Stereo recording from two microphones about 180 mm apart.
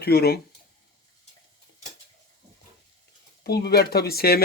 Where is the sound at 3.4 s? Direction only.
60° left (ahead or behind).